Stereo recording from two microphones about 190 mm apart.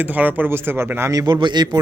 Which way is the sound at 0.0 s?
10° right (ahead or behind).